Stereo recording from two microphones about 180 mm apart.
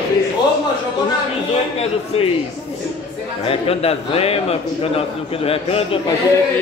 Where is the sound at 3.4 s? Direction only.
35° left (ahead or behind).